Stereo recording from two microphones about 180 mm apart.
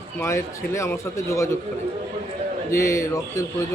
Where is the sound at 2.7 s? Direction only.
15° left (ahead or behind).